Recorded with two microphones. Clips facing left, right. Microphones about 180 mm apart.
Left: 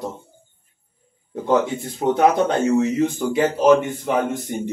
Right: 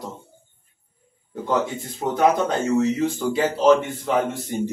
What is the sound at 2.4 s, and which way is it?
Speech, 20° left (ahead or behind).